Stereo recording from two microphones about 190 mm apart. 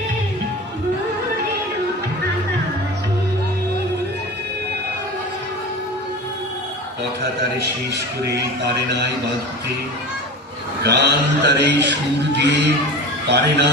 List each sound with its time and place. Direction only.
7.9 s a man's voice: 60° right (ahead or behind)
10.8 s a man's voice: 65° right (ahead or behind)